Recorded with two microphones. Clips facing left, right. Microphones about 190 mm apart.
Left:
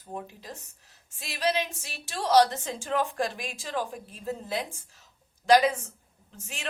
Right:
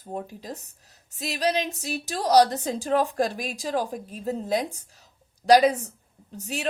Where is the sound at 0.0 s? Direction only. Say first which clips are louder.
Right 5 dB; 35° right (ahead or behind).